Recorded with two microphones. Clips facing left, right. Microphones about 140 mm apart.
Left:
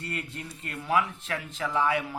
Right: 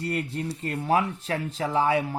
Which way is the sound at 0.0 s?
35° right (ahead or behind).